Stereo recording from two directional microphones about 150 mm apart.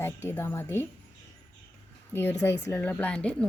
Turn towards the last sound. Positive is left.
turn(degrees=5)  # may be behind; listen again after turning